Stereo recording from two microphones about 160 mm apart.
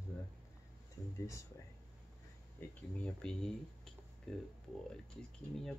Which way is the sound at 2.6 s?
10° left (ahead or behind).